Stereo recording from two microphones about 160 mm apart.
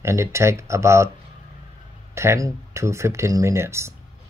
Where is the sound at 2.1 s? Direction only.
15° right (ahead or behind).